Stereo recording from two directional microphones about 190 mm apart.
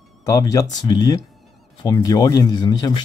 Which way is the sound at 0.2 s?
20° left (ahead or behind).